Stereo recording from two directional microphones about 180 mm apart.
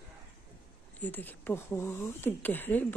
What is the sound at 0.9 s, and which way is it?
Speech, 10° left (ahead or behind).